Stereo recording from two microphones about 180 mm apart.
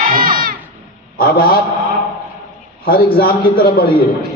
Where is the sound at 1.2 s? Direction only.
55° left (ahead or behind).